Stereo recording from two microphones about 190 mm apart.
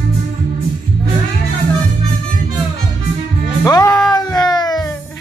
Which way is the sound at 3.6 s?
20° left (ahead or behind).